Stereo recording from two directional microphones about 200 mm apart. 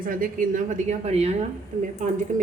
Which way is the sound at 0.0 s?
45° right (ahead or behind).